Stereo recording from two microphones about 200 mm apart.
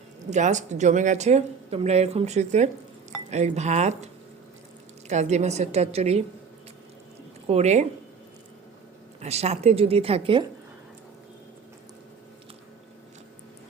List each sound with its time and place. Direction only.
0.3 s a woman's voice: 35° right (ahead or behind)
7.4 s speech: 35° right (ahead or behind)
9.2 s speech: 30° right (ahead or behind)